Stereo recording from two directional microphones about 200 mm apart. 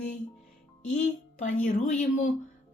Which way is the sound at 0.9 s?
40° left (ahead or behind).